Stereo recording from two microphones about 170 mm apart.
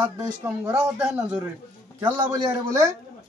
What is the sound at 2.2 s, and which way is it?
Speech, 25° right (ahead or behind).